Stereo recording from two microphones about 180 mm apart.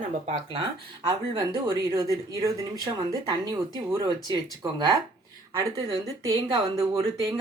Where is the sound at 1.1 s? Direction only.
25° right (ahead or behind).